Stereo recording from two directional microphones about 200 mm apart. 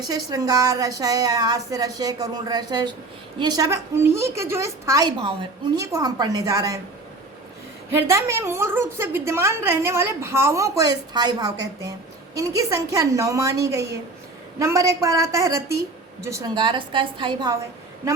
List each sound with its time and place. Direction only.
0.1 s a woman's voice: 20° right (ahead or behind)
7.9 s a woman's voice: 15° right (ahead or behind)